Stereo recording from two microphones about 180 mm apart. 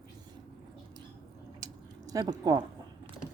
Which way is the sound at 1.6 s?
20° right (ahead or behind).